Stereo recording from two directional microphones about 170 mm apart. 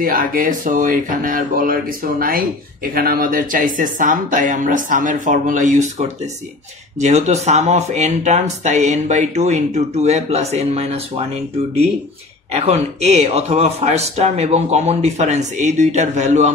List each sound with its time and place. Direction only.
0.0 s speech: 55° right (ahead or behind); by 11.2 s 40° right (ahead or behind)
12.5 s speech: 40° right (ahead or behind)